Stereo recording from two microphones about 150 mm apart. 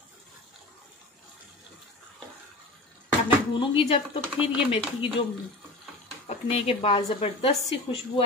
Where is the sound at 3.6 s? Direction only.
35° left (ahead or behind).